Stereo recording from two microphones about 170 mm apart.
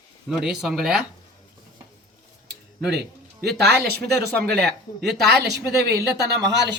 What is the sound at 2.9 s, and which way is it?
Speech, 75° right (ahead or behind).